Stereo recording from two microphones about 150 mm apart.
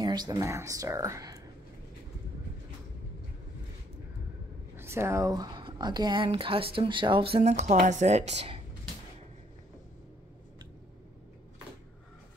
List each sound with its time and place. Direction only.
0.0 s speech: 25° right (ahead or behind)
4.7 s speech: 15° right (ahead or behind); by 8.5 s 45° right (ahead or behind)